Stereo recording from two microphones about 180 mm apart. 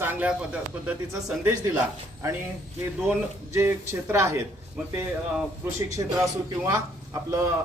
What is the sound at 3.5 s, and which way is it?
Speech, 15° right (ahead or behind).